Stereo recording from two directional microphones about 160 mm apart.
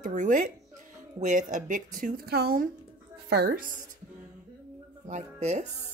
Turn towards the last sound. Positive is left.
turn(degrees=-45)  # may be behind; listen again after turning